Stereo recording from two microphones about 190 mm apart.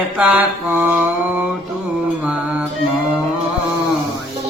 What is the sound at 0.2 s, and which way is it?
Mantra, 10° right (ahead or behind).